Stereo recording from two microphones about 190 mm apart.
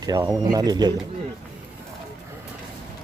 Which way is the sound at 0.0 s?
20° right (ahead or behind).